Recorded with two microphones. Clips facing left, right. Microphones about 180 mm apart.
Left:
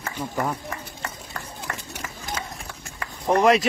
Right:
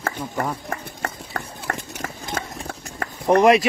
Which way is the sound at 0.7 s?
55° right (ahead or behind).